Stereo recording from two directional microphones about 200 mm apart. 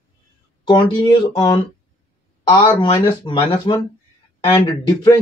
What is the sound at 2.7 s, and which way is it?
Speech, 25° left (ahead or behind).